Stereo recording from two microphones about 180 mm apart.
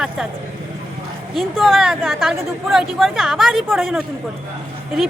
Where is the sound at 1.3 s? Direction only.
Centre (ahead or behind).